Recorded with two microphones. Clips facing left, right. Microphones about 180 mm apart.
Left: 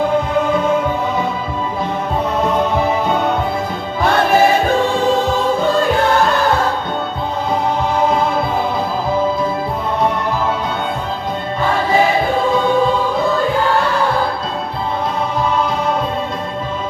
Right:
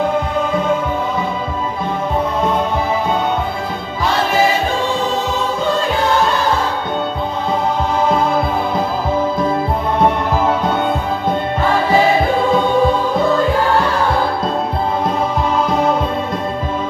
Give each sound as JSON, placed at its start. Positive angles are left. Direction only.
{"t": 4.0, "sound": "music", "side_deg": 55}